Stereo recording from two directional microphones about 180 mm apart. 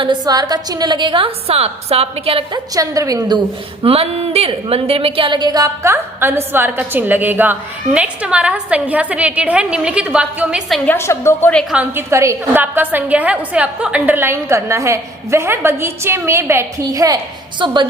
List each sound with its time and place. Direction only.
0.0 s a woman's voice: 25° right (ahead or behind)
2.7 s a woman's voice: 20° right (ahead or behind)
3.8 s a woman's voice: 35° right (ahead or behind); by 10.8 s 5° right (ahead or behind)
10.8 s a woman's voice: 15° left (ahead or behind)
11.7 s a woman's voice: 10° right (ahead or behind); by 17.8 s 25° right (ahead or behind)